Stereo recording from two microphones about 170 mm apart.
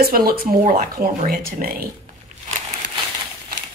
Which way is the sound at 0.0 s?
60° right (ahead or behind).